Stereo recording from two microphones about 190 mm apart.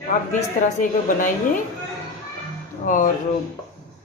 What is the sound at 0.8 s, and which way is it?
Speech, 45° left (ahead or behind).